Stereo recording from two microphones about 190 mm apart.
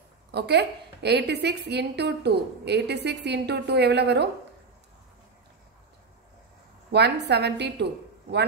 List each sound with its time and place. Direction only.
0.3 s a woman's voice: 60° right (ahead or behind)
6.9 s a woman's voice: 60° right (ahead or behind)